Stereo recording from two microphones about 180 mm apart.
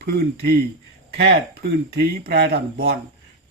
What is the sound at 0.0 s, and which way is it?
Speech, 60° right (ahead or behind).